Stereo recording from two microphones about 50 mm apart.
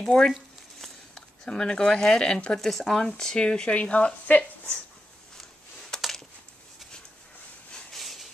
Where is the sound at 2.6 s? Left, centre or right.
Centre.